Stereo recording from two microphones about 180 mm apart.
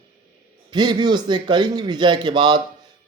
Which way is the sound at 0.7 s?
25° right (ahead or behind).